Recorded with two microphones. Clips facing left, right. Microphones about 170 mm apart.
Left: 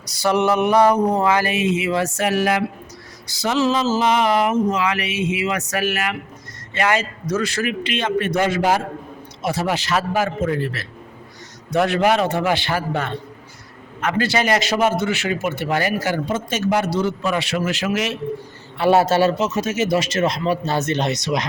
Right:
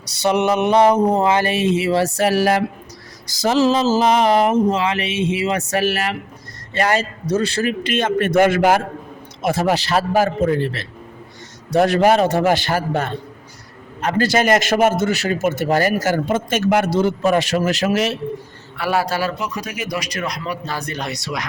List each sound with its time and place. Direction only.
0.1 s speech: 20° right (ahead or behind)
11.7 s a man's voice: 40° right (ahead or behind)
18.8 s a man's voice: 25° left (ahead or behind)